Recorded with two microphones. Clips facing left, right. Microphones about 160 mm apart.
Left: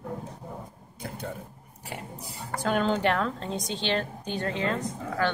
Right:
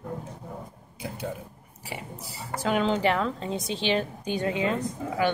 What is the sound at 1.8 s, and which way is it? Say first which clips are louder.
A woman's voice: right 1 dB; centre (ahead or behind).